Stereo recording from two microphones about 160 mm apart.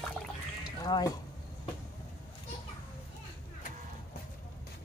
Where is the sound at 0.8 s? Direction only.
25° left (ahead or behind).